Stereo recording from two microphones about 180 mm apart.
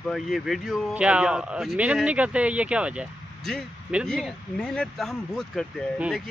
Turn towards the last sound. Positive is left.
turn(degrees=0)  # may be behind; listen again after turning